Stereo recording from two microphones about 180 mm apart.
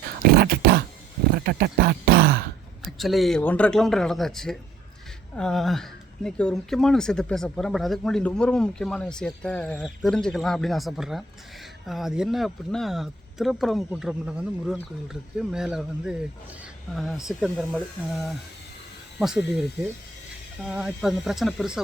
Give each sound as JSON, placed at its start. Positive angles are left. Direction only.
{"t": 0.3, "sound": "a sound", "side_deg": -60}
{"t": 1.3, "sound": "speech", "side_deg": -60}
{"t": 2.8, "sound": "speech", "side_deg": 0}
{"t": 19.2, "sound": "speech", "side_deg": -5}
{"t": 20.7, "sound": "speech", "side_deg": -5}